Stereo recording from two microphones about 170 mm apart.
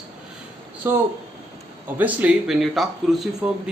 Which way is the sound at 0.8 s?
15° right (ahead or behind).